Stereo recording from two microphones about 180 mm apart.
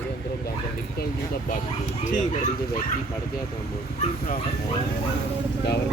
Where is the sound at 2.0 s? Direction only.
45° left (ahead or behind).